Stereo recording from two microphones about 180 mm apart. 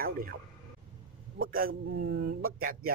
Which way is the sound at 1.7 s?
65° right (ahead or behind).